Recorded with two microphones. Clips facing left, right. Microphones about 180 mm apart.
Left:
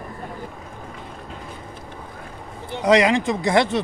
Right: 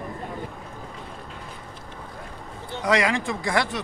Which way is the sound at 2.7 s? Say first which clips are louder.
Left 6 dB; 20° left (ahead or behind).